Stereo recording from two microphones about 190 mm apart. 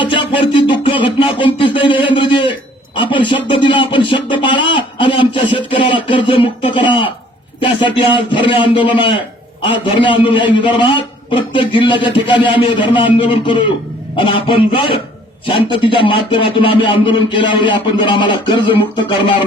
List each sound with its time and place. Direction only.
0.0 s music: 25° left (ahead or behind)
1.5 s a man's voice: 25° left (ahead or behind)